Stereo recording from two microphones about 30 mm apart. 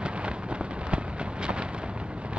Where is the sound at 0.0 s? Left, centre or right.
Right.